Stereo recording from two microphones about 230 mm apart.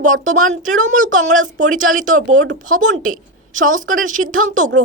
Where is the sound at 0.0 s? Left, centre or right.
Right.